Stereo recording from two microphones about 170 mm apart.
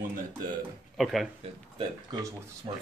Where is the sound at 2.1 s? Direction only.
25° right (ahead or behind).